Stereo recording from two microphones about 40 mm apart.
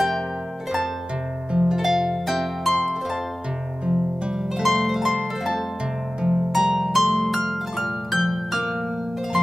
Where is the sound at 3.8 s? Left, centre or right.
Right.